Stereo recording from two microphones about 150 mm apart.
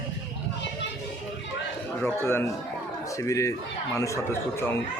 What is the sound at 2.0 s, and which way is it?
A man's voice, 15° left (ahead or behind).